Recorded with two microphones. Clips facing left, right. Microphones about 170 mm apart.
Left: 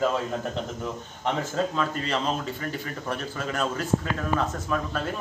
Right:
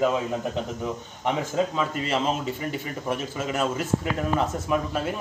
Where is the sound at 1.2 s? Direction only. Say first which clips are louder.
Right 2 dB; 10° right (ahead or behind).